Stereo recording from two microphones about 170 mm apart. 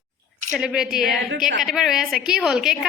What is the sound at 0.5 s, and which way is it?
A woman's voice, 5° right (ahead or behind).